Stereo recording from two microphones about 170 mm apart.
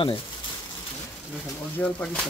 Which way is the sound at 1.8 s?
10° left (ahead or behind).